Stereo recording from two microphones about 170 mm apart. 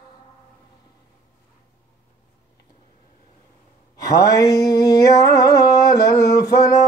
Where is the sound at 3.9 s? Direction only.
20° left (ahead or behind).